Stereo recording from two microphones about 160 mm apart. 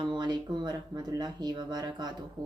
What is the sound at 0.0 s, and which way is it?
Speech, 25° right (ahead or behind).